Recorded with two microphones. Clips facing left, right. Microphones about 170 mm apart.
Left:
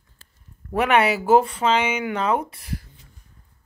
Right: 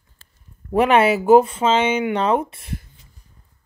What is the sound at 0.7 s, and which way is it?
Speech, 30° right (ahead or behind).